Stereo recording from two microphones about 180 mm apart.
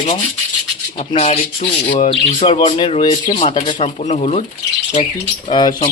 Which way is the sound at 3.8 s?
35° left (ahead or behind).